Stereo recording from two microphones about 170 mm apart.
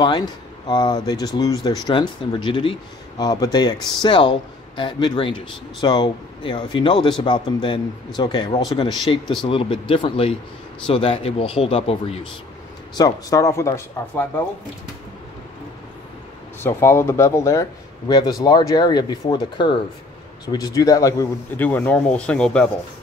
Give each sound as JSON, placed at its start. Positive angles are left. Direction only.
{"t": 0.0, "sound": "speech", "side_deg": 25}
{"t": 12.9, "sound": "speech", "side_deg": 20}
{"t": 16.6, "sound": "speech", "side_deg": 15}